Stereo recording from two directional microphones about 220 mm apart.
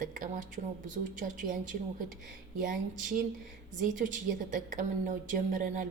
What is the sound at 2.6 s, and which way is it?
A woman's voice, 35° right (ahead or behind).